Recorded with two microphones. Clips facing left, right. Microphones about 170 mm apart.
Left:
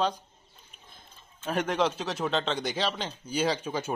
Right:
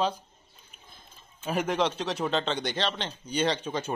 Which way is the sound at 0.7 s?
5° right (ahead or behind).